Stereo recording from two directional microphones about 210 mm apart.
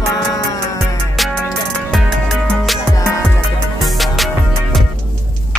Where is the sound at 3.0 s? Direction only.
15° left (ahead or behind).